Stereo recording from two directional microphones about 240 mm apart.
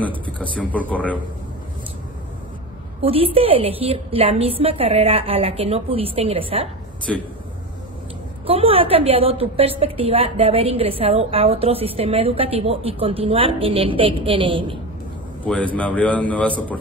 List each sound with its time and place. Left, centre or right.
0.0 s a man's voice: centre
3.0 s a woman's voice: right
7.1 s a man's voice: centre
8.5 s a woman's voice: right
15.4 s a man's voice: centre